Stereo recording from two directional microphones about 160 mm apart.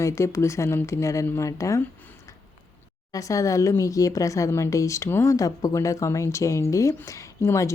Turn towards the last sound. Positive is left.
turn(degrees=15)  # may be behind; listen again after turning